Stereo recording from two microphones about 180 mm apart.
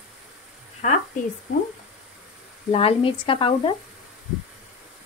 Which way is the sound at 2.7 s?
30° left (ahead or behind).